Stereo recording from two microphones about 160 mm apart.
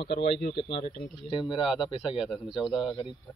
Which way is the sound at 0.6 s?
30° left (ahead or behind).